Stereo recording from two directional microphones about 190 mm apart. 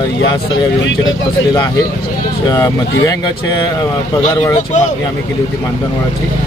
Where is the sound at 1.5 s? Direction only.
20° left (ahead or behind).